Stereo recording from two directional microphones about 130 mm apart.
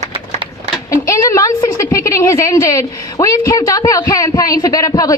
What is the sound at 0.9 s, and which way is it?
A woman's voice, 25° left (ahead or behind).